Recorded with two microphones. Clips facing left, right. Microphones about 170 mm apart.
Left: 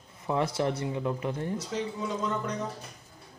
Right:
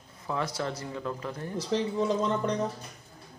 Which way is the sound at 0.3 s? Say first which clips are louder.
Left 4 dB; 25° left (ahead or behind).